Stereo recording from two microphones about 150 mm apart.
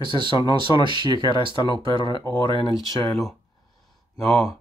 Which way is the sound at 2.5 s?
25° left (ahead or behind).